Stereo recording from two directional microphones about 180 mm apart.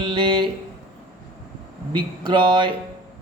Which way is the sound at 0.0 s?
25° right (ahead or behind).